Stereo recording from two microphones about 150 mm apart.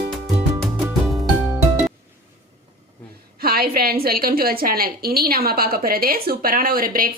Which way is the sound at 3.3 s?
90° right.